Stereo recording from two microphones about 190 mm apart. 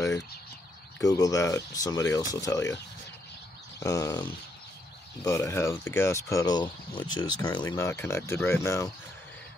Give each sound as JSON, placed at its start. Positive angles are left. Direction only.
{"t": 0.9, "sound": "speech", "side_deg": 20}
{"t": 3.8, "sound": "speech", "side_deg": 20}